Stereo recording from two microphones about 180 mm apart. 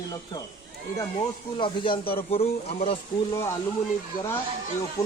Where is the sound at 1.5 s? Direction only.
30° left (ahead or behind).